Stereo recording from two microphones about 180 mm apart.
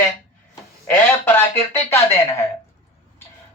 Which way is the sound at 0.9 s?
10° left (ahead or behind).